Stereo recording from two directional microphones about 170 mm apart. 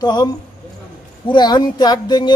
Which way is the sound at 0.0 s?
25° left (ahead or behind).